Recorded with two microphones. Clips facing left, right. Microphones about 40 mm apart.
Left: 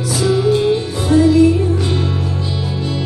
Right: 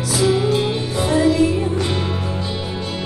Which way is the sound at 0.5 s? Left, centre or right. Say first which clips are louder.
Left 4 dB; right.